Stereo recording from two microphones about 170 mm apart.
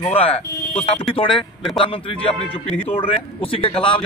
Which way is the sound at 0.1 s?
35° left (ahead or behind).